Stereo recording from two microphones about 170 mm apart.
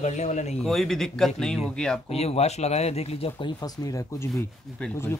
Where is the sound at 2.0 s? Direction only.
40° left (ahead or behind).